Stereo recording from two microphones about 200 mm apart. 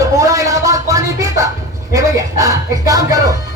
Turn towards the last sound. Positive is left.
turn(degrees=-15)  # may be behind; listen again after turning